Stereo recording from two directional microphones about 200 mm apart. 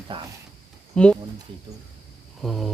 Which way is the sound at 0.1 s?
25° right (ahead or behind).